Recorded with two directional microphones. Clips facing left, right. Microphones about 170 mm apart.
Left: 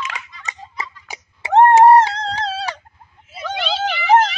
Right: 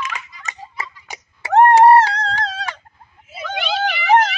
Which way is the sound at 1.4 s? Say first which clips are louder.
Even; 20° left (ahead or behind).